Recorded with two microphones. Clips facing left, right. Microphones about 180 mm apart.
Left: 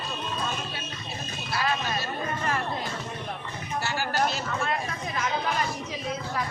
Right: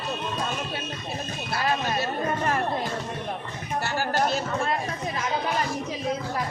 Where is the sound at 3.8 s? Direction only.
50° right (ahead or behind).